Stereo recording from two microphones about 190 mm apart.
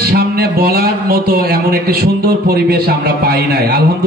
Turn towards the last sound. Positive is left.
turn(degrees=-50)  # may be behind; listen again after turning